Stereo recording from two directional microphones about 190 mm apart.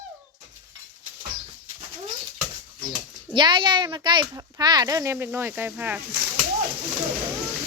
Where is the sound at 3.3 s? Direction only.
25° right (ahead or behind); by 6.0 s 10° right (ahead or behind).